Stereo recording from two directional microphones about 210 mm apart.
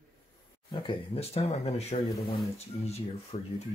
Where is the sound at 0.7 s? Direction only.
25° left (ahead or behind).